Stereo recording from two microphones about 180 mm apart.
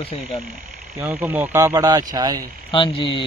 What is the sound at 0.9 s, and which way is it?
Speech, 10° right (ahead or behind).